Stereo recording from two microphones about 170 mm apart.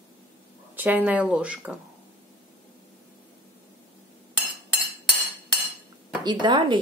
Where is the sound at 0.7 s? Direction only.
10° right (ahead or behind).